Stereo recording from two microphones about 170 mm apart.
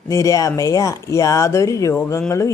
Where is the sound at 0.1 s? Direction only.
20° left (ahead or behind).